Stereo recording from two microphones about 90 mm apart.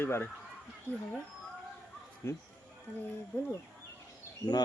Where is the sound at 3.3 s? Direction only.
20° left (ahead or behind).